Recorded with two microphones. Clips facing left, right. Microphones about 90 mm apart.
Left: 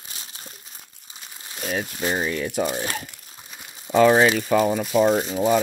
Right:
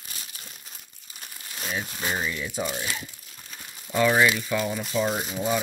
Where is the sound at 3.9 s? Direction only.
25° left (ahead or behind).